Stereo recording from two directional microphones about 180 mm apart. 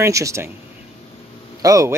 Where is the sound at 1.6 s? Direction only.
20° right (ahead or behind).